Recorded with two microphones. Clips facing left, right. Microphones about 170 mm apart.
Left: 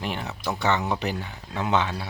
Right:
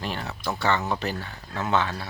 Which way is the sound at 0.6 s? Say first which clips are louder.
Left 1 dB; 15° left (ahead or behind).